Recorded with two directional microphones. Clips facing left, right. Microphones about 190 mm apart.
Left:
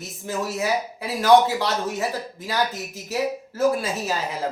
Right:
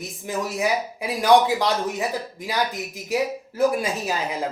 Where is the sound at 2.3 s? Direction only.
15° right (ahead or behind).